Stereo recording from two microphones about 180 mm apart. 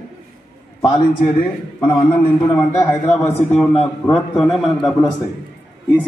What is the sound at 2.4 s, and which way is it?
A man's voice, 15° left (ahead or behind).